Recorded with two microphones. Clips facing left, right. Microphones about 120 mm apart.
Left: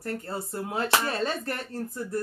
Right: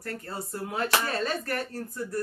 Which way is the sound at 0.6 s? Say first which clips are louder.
Left 1 dB; 25° left (ahead or behind).